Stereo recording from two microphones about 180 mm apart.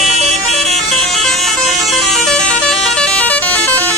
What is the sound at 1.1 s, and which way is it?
Vehicle, centre (ahead or behind).